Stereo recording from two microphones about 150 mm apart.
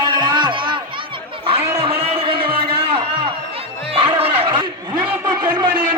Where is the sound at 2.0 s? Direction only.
35° right (ahead or behind).